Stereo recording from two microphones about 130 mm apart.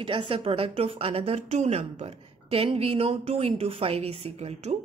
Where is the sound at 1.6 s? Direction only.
60° right (ahead or behind).